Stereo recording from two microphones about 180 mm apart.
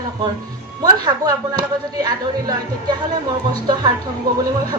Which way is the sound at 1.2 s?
20° right (ahead or behind).